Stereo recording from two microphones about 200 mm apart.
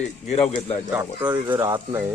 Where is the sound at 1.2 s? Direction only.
20° right (ahead or behind).